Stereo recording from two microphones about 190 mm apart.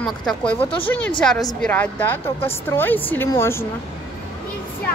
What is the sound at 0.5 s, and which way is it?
Speech, 30° left (ahead or behind).